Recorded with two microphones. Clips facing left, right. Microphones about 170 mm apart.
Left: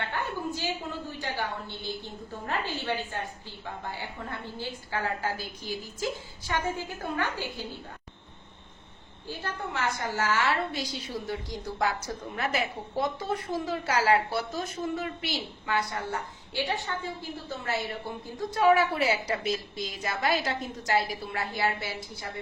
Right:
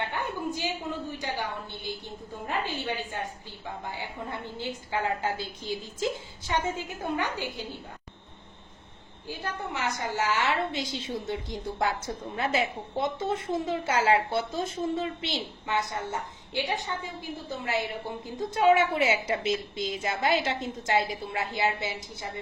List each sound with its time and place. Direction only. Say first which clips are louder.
0.0 s a sound: right 1 dB; 15° right (ahead or behind)
1.2 s a woman's voice: even; 15° right (ahead or behind)
3.9 s a woman's voice: right 2 dB; 15° right (ahead or behind)
9.2 s a woman's voice: right 1 dB; 15° right (ahead or behind)